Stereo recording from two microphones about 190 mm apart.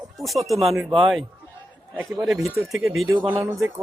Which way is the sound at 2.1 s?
15° right (ahead or behind).